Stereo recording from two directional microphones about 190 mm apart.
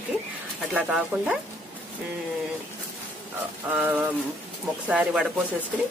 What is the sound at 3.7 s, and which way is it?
Speech, 10° right (ahead or behind).